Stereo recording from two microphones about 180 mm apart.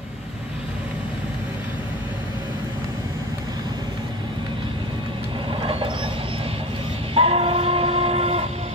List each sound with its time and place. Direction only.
5.5 s train: 30° right (ahead or behind)
7.2 s train: 30° right (ahead or behind)